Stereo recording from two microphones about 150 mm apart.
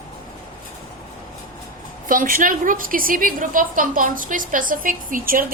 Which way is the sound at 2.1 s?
65° right (ahead or behind).